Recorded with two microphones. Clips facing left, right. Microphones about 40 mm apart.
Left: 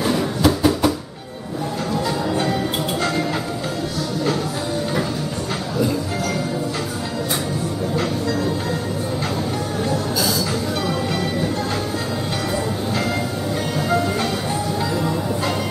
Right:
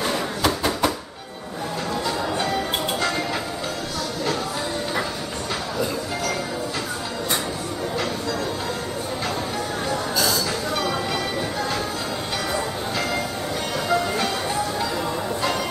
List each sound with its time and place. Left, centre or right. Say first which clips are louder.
0.0 s a sound: left 4 dB; centre
2.0 s music: left 3 dB; centre
13.8 s music: left 1 dB; centre